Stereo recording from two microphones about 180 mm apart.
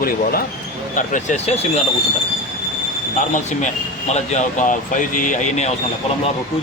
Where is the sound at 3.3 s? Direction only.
40° left (ahead or behind).